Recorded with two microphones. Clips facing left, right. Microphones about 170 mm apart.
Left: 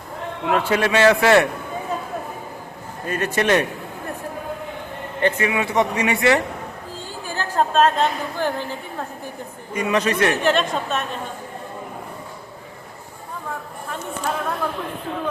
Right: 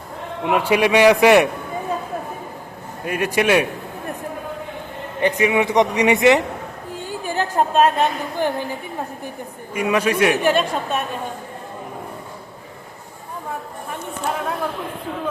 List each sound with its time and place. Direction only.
0.4 s a man's voice: 15° right (ahead or behind)
3.1 s a man's voice: 10° right (ahead or behind)
5.2 s a woman's voice: 15° right (ahead or behind)